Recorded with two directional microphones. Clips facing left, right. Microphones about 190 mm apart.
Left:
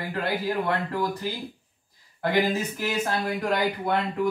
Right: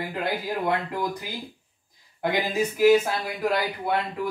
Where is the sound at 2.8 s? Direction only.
5° right (ahead or behind).